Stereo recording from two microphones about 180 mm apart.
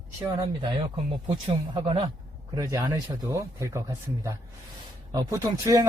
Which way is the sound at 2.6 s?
20° right (ahead or behind).